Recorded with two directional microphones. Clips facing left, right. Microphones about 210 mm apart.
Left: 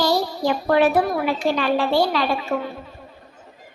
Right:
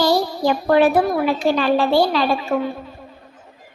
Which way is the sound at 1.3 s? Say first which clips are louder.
Right 3 dB; 35° right (ahead or behind).